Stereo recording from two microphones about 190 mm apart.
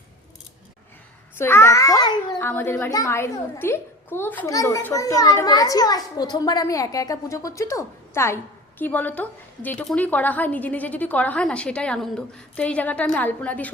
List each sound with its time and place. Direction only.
1.4 s a woman's voice: 15° left (ahead or behind)
2.4 s a woman's voice: 10° left (ahead or behind)